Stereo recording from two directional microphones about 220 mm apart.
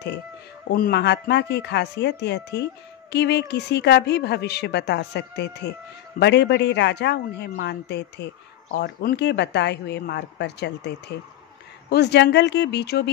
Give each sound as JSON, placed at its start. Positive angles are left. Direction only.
{"t": 0.7, "sound": "speech", "side_deg": 45}